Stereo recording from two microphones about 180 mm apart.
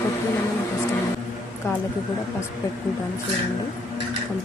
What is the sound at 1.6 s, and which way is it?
Speech, 10° left (ahead or behind).